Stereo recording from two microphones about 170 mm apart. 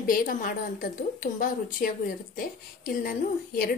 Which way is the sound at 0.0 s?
55° left (ahead or behind).